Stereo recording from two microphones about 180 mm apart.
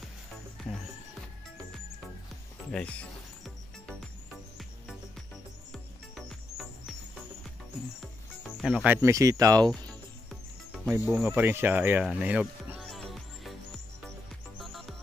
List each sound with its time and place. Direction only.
0.6 s music: centre (ahead or behind)
2.7 s music: 5° left (ahead or behind)
5.7 s music: centre (ahead or behind)
8.5 s speech: 5° right (ahead or behind); by 9.7 s 20° right (ahead or behind)
10.9 s speech: 5° right (ahead or behind)
12.7 s music: centre (ahead or behind)
14.6 s music: centre (ahead or behind)